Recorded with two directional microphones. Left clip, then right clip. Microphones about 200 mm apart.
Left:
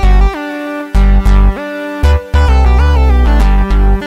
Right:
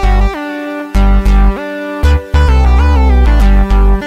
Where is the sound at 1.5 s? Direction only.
20° right (ahead or behind).